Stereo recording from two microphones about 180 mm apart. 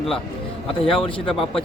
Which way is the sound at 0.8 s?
30° left (ahead or behind).